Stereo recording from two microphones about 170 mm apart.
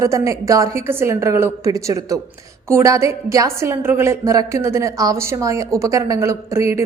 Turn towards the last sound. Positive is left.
turn(degrees=-15)  # may be behind; listen again after turning